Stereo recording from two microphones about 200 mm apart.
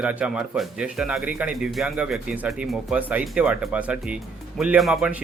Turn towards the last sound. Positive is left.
turn(degrees=-5)  # may be behind; listen again after turning